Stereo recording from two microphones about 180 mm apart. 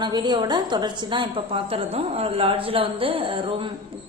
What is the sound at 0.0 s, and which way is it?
A woman's voice, 25° right (ahead or behind).